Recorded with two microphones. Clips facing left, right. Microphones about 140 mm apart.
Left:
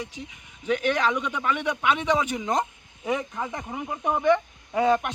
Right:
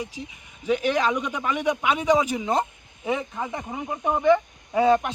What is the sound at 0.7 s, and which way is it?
A man's voice, 10° right (ahead or behind).